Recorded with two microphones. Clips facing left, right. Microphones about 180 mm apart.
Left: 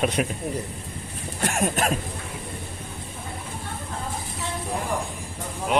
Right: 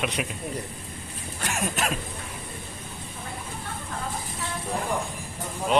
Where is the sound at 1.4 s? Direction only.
50° left (ahead or behind).